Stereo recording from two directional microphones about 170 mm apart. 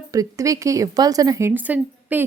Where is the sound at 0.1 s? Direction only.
20° right (ahead or behind).